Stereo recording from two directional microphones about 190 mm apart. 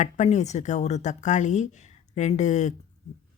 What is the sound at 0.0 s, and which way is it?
Speech, 40° left (ahead or behind).